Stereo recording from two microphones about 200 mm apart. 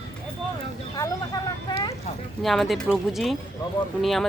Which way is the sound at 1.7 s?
20° left (ahead or behind).